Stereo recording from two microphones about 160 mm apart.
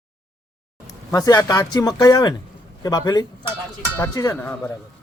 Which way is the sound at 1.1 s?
25° left (ahead or behind).